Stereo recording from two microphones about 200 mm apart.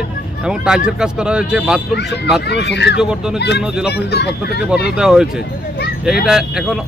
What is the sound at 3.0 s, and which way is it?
Speech, 5° right (ahead or behind).